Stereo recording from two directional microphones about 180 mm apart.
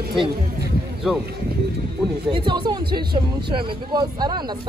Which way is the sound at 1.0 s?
Centre (ahead or behind).